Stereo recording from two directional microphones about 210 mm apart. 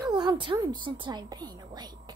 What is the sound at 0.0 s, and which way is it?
A woman's voice, 20° right (ahead or behind).